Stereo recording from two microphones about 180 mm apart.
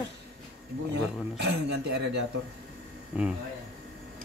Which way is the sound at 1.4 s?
70° right (ahead or behind).